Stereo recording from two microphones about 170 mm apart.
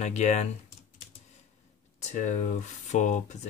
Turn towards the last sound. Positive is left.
turn(degrees=45)  # may be behind; listen again after turning